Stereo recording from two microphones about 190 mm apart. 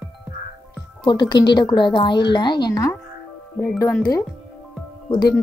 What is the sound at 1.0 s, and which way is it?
A woman's voice, 25° left (ahead or behind).